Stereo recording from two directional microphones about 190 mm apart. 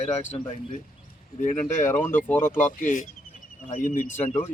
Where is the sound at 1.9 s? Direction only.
10° left (ahead or behind).